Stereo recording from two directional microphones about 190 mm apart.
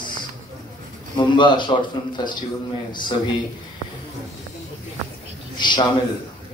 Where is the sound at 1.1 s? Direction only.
25° left (ahead or behind).